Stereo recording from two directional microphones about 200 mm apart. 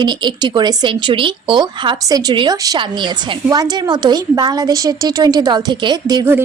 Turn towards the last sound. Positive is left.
turn(degrees=-15)  # may be behind; listen again after turning